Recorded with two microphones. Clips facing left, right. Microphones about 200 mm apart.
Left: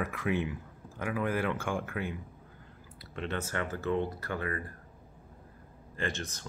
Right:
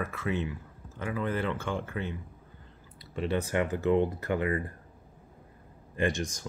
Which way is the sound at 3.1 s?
10° right (ahead or behind).